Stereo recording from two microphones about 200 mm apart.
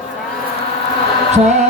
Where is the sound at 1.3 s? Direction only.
35° right (ahead or behind).